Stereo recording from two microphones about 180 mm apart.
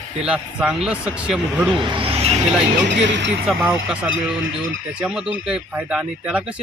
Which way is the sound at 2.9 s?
85° right.